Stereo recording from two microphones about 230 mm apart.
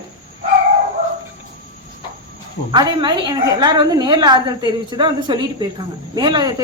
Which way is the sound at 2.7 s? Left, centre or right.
Centre.